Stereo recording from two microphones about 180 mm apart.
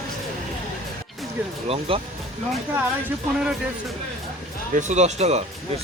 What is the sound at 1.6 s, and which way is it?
Speech, 35° right (ahead or behind).